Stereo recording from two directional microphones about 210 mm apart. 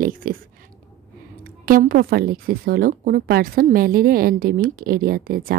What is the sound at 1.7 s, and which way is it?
Speech, 45° right (ahead or behind).